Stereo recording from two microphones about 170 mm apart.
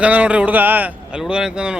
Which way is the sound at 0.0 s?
10° right (ahead or behind).